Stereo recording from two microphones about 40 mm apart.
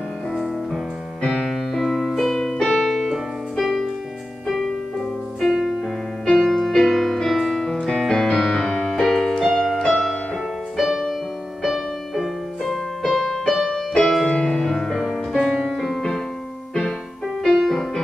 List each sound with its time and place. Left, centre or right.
0.3 s music: centre
1.4 s keyboard: centre
3.5 s music: centre
5.4 s music: centre
6.2 s music: centre
9.0 s music: centre
9.4 s keyboard: centre
9.8 s music: centre
15.3 s music: centre
17.6 s music: centre